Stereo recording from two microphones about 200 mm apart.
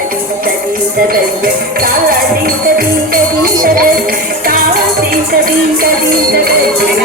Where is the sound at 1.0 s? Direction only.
45° right (ahead or behind).